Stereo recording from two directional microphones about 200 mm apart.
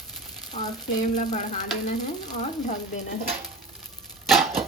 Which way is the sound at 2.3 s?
35° left (ahead or behind).